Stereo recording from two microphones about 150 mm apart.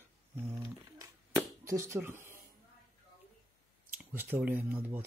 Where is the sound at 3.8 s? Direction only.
15° right (ahead or behind).